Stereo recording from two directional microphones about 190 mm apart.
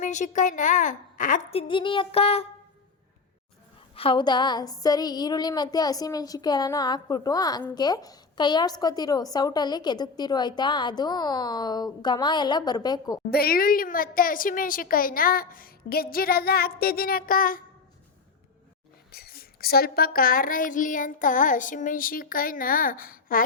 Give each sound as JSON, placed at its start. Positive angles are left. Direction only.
{"t": 0.0, "sound": "a woman's voice", "side_deg": 40}
{"t": 1.5, "sound": "a woman's voice", "side_deg": 25}
{"t": 3.9, "sound": "a woman's voice", "side_deg": 30}
{"t": 13.3, "sound": "a woman's voice", "side_deg": 50}
{"t": 19.1, "sound": "a woman's voice", "side_deg": 55}